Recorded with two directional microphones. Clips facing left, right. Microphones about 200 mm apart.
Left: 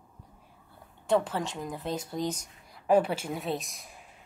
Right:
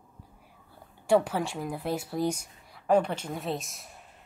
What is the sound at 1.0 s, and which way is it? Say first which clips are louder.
A woman's voice: right 3 dB; 10° right (ahead or behind).